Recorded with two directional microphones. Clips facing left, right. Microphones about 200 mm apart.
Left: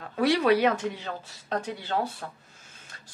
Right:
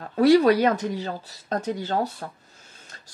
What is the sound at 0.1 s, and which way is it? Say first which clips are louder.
Speech: right 6 dB; 40° right (ahead or behind).